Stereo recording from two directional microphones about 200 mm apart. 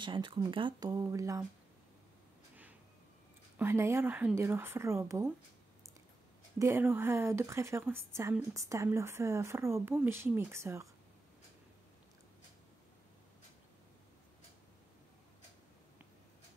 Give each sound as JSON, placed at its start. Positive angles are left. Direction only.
{"t": 0.0, "sound": "speech", "side_deg": -25}
{"t": 3.5, "sound": "a woman's voice", "side_deg": -15}
{"t": 6.6, "sound": "a woman's voice", "side_deg": -10}